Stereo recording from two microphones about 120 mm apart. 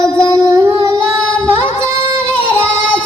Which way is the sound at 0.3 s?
30° right (ahead or behind).